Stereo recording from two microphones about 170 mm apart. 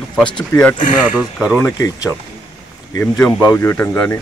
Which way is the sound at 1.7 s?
20° left (ahead or behind).